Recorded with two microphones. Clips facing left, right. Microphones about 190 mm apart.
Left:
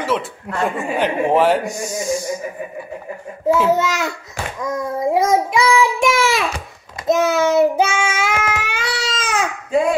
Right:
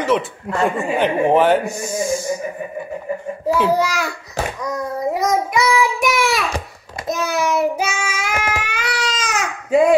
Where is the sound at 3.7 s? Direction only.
25° left (ahead or behind).